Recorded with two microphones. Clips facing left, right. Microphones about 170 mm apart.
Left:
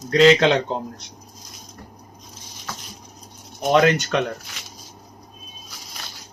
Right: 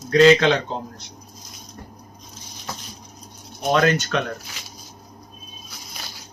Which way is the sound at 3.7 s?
15° left (ahead or behind).